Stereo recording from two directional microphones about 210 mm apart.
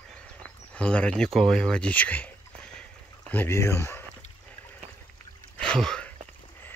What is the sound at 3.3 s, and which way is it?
Speech, 10° left (ahead or behind).